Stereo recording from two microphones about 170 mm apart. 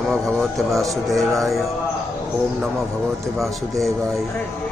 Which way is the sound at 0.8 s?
Centre (ahead or behind).